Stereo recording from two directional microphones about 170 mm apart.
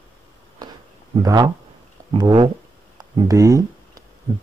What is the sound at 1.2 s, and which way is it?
Speech, 20° right (ahead or behind).